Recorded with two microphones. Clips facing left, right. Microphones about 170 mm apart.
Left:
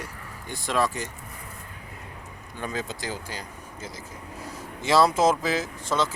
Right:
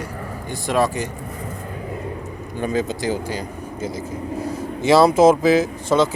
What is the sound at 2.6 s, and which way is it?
A man's voice, 15° right (ahead or behind).